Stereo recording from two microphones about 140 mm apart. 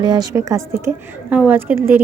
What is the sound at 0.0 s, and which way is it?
Speech, 30° right (ahead or behind).